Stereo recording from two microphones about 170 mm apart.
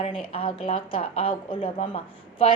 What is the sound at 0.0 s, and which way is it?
A woman's voice, 30° left (ahead or behind).